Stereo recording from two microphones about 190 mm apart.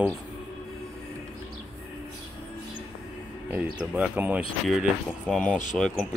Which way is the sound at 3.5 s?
5° right (ahead or behind).